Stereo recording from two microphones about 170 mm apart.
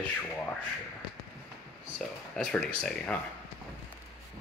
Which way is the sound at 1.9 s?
5° left (ahead or behind).